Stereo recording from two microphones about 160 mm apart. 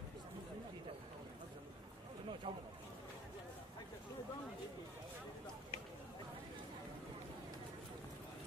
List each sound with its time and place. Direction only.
2.4 s speech: 35° right (ahead or behind)